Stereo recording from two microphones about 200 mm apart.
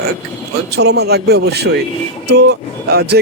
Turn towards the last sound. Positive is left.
turn(degrees=-55)  # may be behind; listen again after turning